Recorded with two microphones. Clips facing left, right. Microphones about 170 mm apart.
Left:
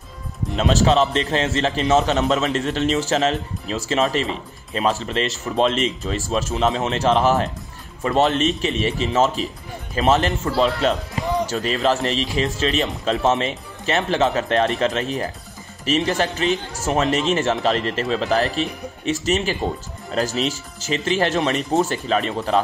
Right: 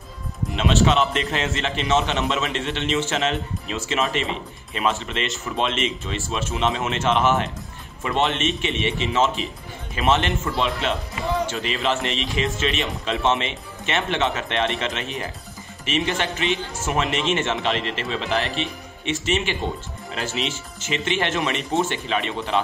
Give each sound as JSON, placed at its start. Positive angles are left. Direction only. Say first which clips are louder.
{"t": 0.6, "sound": "a man's voice", "louder": "left 2 dB", "side_deg": 40}